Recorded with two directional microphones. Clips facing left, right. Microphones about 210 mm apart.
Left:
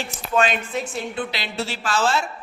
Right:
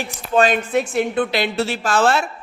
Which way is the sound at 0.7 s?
60° right (ahead or behind).